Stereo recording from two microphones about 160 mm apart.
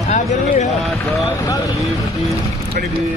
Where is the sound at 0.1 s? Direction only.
45° left (ahead or behind).